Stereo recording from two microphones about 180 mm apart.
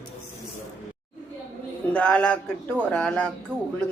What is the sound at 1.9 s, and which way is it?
Speech, 5° left (ahead or behind).